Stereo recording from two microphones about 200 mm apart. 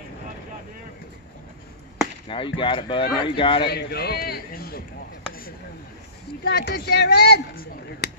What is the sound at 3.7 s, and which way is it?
A man's voice, 50° left (ahead or behind).